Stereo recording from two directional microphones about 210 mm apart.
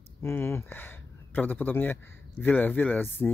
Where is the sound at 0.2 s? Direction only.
10° left (ahead or behind).